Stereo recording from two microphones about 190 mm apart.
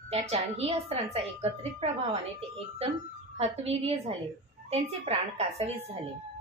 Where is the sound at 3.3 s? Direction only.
35° right (ahead or behind).